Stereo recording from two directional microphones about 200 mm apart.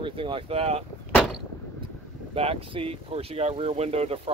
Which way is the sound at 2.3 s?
30° right (ahead or behind).